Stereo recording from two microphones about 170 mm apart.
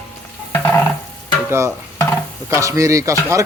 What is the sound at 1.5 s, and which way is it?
Stir, 15° right (ahead or behind).